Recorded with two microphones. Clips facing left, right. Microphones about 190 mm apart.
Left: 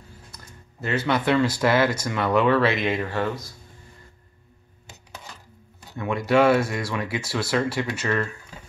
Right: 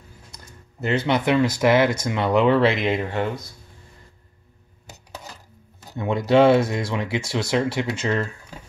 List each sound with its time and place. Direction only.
0.7 s speech: 20° right (ahead or behind)
5.9 s speech: 25° right (ahead or behind)